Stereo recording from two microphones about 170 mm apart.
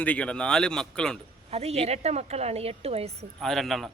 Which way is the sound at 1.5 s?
35° right (ahead or behind).